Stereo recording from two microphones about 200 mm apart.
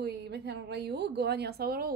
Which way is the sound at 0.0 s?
55° right (ahead or behind).